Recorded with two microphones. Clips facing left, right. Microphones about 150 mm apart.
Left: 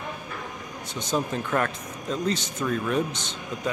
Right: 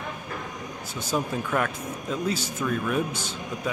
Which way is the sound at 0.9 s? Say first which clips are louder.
Left 1 dB; 10° right (ahead or behind).